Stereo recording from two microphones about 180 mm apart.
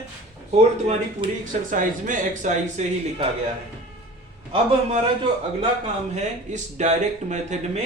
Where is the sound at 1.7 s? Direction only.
45° right (ahead or behind).